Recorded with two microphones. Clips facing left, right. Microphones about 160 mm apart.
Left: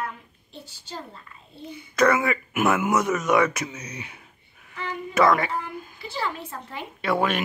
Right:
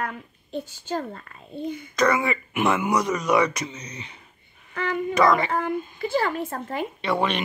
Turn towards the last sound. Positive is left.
turn(degrees=5)  # may be behind; listen again after turning